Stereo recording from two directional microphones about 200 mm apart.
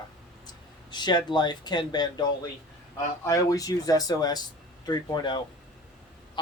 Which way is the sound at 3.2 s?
15° left (ahead or behind).